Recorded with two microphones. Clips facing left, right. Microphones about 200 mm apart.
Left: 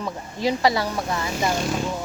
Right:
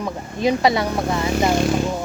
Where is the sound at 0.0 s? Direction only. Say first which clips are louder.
Right 4 dB; 20° right (ahead or behind).